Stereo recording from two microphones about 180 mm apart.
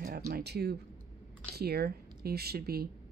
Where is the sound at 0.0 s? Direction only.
60° right (ahead or behind).